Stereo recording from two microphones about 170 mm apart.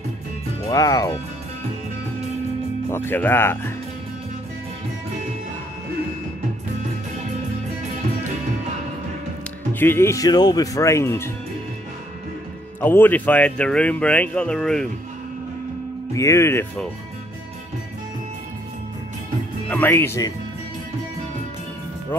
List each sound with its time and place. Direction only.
0.7 s speech: 20° left (ahead or behind)
2.9 s speech: 10° left (ahead or behind)
9.8 s speech: 15° left (ahead or behind)
12.8 s speech: 10° left (ahead or behind)
16.2 s speech: 15° left (ahead or behind)
19.7 s speech: 15° left (ahead or behind)